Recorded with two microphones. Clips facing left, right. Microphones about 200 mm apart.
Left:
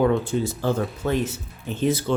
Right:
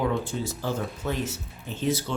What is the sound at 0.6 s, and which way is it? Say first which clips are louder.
Speech: left 6 dB; 55° left (ahead or behind).